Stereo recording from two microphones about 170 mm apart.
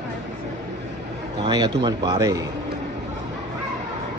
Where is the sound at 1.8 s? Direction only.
20° right (ahead or behind).